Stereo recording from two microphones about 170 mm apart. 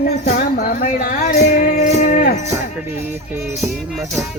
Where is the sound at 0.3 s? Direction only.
55° left (ahead or behind).